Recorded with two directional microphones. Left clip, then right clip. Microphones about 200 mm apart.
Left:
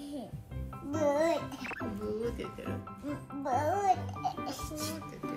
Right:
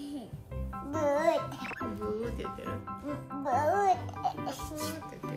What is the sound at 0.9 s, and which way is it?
Music, 15° right (ahead or behind).